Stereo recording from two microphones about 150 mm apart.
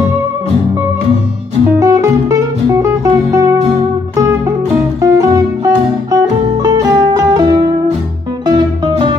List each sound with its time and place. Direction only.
1.8 s music: 20° right (ahead or behind)
5.0 s music: 20° right (ahead or behind)